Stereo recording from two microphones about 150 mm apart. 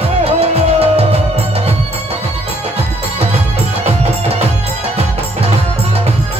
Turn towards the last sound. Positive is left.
turn(degrees=-40)  # may be behind; listen again after turning